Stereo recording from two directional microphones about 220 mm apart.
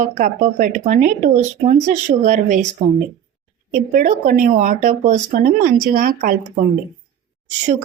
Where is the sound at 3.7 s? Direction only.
40° right (ahead or behind).